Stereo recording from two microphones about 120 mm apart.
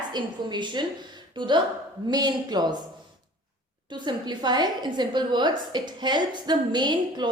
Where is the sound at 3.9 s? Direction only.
40° right (ahead or behind).